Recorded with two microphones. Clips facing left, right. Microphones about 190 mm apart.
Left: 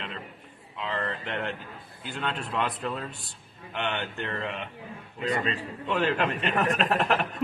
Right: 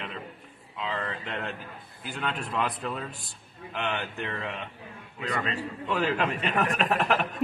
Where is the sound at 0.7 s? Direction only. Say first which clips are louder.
Left 1 dB; 5° right (ahead or behind).